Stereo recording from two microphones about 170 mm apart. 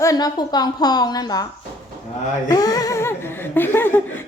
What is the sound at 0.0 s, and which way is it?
A woman's voice, 20° left (ahead or behind).